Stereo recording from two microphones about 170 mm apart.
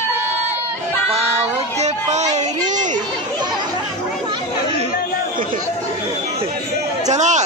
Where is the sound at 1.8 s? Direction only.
40° right (ahead or behind).